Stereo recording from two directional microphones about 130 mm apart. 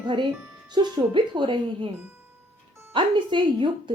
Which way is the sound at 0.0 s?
40° right (ahead or behind).